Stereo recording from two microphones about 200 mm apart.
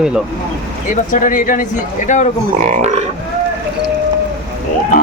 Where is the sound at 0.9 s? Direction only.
40° left (ahead or behind).